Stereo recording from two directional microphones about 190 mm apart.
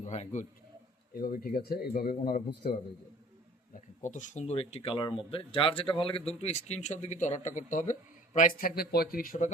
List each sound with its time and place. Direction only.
0.0 s a man's voice: 35° left (ahead or behind)
1.1 s speech: 50° left (ahead or behind)